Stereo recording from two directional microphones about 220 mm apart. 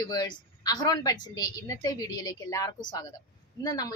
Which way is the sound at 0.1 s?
15° left (ahead or behind).